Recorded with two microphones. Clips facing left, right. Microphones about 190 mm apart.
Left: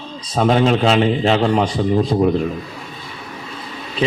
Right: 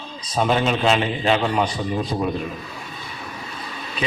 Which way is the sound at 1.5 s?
25° left (ahead or behind).